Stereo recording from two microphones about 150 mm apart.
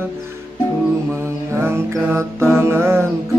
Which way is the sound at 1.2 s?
15° right (ahead or behind).